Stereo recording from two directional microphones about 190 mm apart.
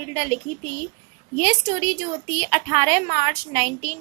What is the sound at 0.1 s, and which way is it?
A woman's voice, 40° right (ahead or behind).